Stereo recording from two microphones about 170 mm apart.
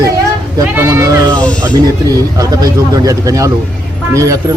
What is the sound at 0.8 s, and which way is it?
Speech, 15° right (ahead or behind).